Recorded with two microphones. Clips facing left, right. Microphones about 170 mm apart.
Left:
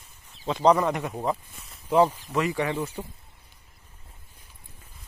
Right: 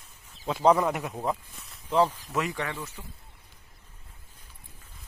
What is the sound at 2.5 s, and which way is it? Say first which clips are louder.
Speech: left 7 dB; 20° left (ahead or behind).